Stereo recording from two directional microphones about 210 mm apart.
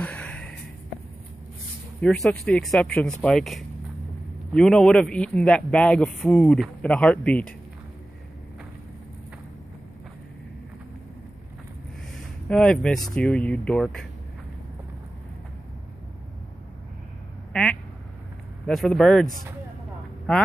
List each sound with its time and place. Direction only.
0.0 s a sound: 5° left (ahead or behind)
2.0 s a man's voice: centre (ahead or behind)
12.4 s a man's voice: 5° left (ahead or behind)
17.5 s quack: 5° left (ahead or behind)
18.7 s a man's voice: centre (ahead or behind)
20.3 s a man's voice: centre (ahead or behind)